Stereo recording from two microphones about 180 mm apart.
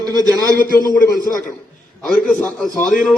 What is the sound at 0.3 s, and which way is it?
Speech, 20° left (ahead or behind).